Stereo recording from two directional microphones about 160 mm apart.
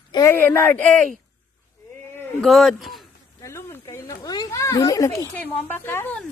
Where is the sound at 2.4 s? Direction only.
Centre (ahead or behind).